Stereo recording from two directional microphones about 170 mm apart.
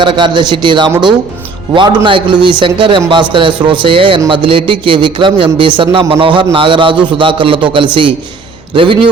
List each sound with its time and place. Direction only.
0.0 s a man's voice: 25° right (ahead or behind)